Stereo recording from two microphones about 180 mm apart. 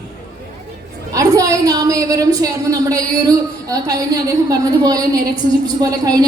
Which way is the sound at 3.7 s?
20° right (ahead or behind).